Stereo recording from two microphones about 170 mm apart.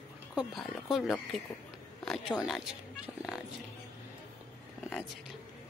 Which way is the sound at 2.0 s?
Centre (ahead or behind).